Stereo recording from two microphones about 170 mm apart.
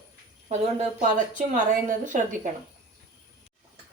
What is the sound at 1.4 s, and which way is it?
Speech, 50° right (ahead or behind).